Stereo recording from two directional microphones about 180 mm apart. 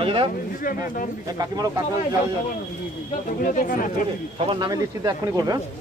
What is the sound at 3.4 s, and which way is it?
Speech, 45° left (ahead or behind).